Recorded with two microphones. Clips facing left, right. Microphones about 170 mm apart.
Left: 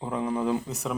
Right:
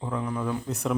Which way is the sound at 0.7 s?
Centre (ahead or behind).